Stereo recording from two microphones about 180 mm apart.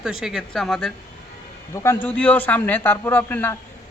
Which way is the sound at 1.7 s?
15° left (ahead or behind).